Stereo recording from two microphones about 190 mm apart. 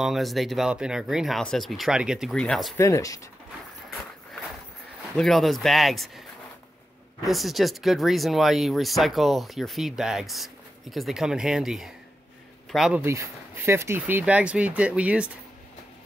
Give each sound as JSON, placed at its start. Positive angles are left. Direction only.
{"t": 0.0, "sound": "speech", "side_deg": 0}
{"t": 2.8, "sound": "speech", "side_deg": 15}
{"t": 5.1, "sound": "speech", "side_deg": 0}
{"t": 7.2, "sound": "speech", "side_deg": 0}